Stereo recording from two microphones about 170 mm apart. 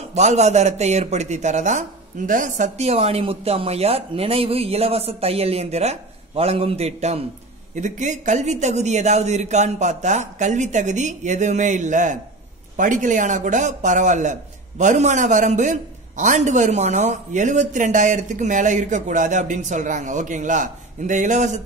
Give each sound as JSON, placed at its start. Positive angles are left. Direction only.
{"t": 0.1, "sound": "a man's voice", "side_deg": -40}